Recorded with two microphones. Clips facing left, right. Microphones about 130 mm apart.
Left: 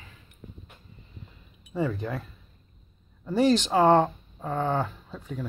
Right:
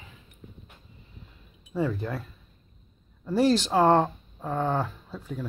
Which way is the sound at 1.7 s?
Centre (ahead or behind).